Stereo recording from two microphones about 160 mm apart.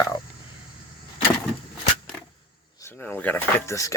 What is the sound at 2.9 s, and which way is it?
Speech, 5° left (ahead or behind).